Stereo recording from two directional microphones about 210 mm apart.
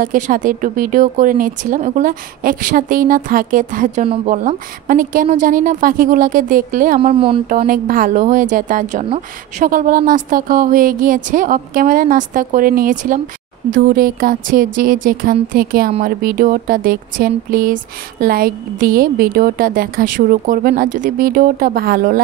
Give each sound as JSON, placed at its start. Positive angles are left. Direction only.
{"t": 0.0, "sound": "a woman's voice", "side_deg": -40}
{"t": 7.2, "sound": "speech", "side_deg": -25}
{"t": 7.4, "sound": "a woman's voice", "side_deg": -45}